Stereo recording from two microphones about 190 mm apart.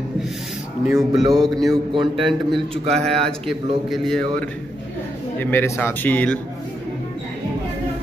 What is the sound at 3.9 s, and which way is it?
Speech, centre (ahead or behind).